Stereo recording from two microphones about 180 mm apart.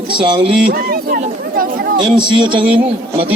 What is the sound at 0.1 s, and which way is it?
Speech, 25° right (ahead or behind).